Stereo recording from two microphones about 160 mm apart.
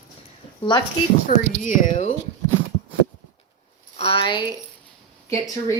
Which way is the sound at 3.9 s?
35° left (ahead or behind).